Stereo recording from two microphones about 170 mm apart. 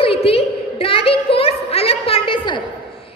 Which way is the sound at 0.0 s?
35° left (ahead or behind).